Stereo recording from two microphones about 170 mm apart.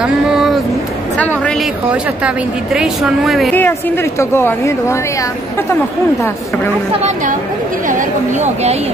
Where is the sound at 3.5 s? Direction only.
10° left (ahead or behind).